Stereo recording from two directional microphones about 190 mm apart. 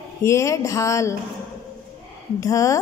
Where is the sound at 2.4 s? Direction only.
15° left (ahead or behind).